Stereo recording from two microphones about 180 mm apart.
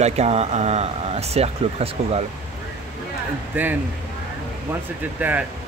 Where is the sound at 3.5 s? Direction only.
10° right (ahead or behind).